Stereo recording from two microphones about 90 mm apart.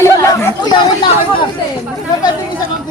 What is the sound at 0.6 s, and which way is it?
Chatter, 60° left (ahead or behind).